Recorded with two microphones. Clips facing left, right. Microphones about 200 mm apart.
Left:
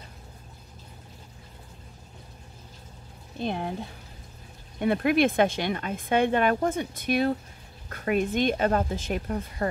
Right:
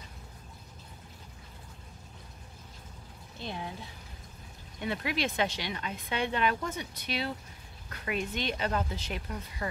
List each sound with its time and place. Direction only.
3.3 s speech: 55° left (ahead or behind)